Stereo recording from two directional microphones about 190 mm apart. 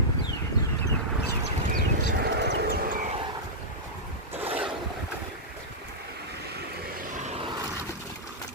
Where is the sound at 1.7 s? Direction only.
55° right (ahead or behind).